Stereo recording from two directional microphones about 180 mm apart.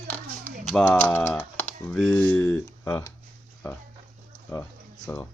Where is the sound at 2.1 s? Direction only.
10° left (ahead or behind).